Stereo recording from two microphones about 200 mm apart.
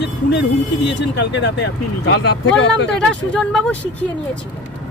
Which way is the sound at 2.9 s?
5° left (ahead or behind).